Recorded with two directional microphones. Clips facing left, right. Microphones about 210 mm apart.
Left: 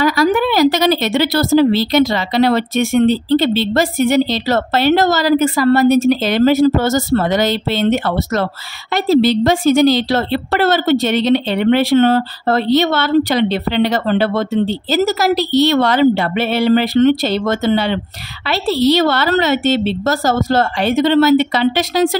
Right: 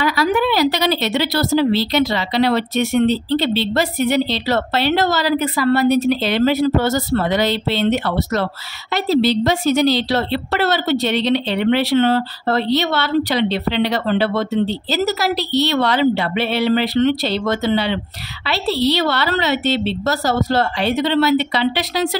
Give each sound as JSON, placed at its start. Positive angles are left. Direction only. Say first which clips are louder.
{"t": 0.0, "sound": "a woman's voice", "louder": "left 4 dB", "side_deg": 45}